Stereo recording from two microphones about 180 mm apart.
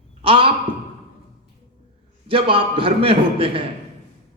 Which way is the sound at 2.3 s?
30° right (ahead or behind).